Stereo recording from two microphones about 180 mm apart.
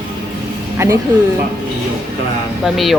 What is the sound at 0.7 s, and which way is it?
Speech, 15° right (ahead or behind).